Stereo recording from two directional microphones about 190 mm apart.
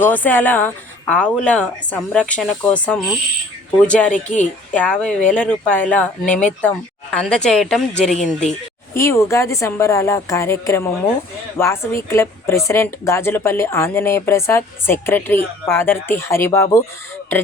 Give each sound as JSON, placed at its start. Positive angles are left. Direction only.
{"t": 0.0, "sound": "speech", "side_deg": 10}
{"t": 4.1, "sound": "speech", "side_deg": 40}
{"t": 4.7, "sound": "speech", "side_deg": 5}
{"t": 9.0, "sound": "speech", "side_deg": 15}